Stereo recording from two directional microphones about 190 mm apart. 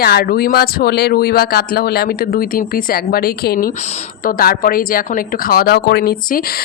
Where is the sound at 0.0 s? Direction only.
55° left (ahead or behind).